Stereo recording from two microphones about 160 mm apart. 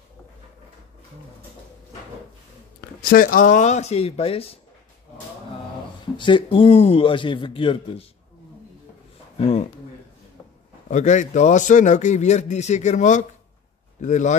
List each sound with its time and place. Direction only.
3.0 s a man's voice: 65° left (ahead or behind); by 4.6 s 35° left (ahead or behind)
6.1 s a man's voice: 30° left (ahead or behind)
10.9 s a man's voice: 50° left (ahead or behind)